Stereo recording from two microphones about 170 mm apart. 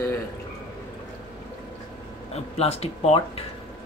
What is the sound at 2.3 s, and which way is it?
Speech, 35° left (ahead or behind).